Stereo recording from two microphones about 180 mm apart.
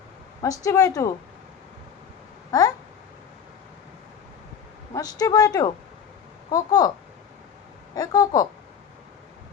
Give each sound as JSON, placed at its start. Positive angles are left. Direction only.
{"t": 0.4, "sound": "a woman's voice", "side_deg": 20}
{"t": 2.5, "sound": "a sound", "side_deg": 20}
{"t": 4.9, "sound": "a woman's voice", "side_deg": 20}
{"t": 7.9, "sound": "a woman's voice", "side_deg": 20}